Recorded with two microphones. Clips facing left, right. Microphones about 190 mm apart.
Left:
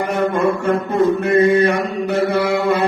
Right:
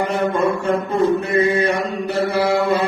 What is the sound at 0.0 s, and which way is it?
Mantra, 60° left (ahead or behind).